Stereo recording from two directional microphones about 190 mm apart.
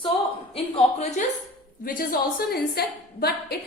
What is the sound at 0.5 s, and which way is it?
Speech, 35° left (ahead or behind).